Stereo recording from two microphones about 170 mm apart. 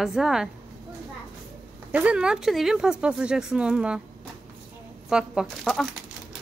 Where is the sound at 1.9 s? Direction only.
5° right (ahead or behind).